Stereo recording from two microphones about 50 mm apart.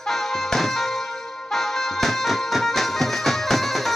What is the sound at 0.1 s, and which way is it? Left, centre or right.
Music, centre.